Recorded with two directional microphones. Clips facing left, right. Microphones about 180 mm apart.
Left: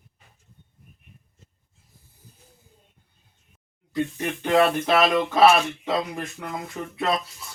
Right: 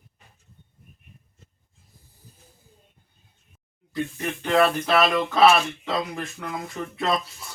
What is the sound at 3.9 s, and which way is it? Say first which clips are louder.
Speech: left 2 dB; 20° left (ahead or behind).